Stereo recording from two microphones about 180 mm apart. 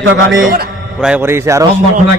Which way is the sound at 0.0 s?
90° right.